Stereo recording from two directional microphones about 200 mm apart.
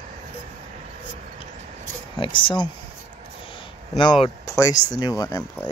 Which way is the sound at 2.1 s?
25° left (ahead or behind).